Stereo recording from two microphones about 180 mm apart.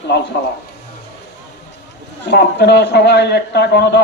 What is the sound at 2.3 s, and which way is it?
A man's voice, 70° left (ahead or behind).